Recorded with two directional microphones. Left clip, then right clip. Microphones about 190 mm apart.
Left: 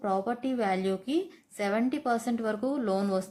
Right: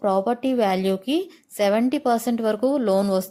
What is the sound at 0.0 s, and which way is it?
Speech, 40° right (ahead or behind).